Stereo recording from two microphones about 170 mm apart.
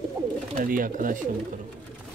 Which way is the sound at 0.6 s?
55° right (ahead or behind).